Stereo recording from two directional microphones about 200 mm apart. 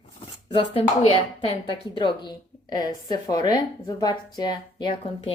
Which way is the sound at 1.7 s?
25° left (ahead or behind).